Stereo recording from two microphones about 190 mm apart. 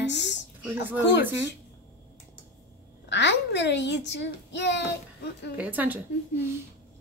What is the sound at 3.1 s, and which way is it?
A child's voice, 65° left (ahead or behind).